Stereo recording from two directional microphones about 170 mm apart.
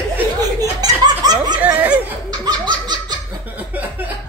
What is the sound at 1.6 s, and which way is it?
Speech, 10° right (ahead or behind).